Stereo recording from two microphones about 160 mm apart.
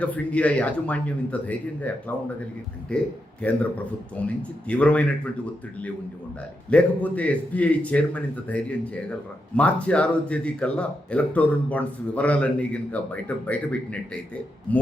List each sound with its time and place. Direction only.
0.0 s speech: 10° left (ahead or behind)
3.4 s speech: 10° left (ahead or behind)
6.7 s speech: 10° left (ahead or behind)